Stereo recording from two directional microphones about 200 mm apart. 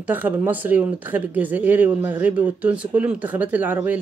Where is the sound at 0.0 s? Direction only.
10° right (ahead or behind).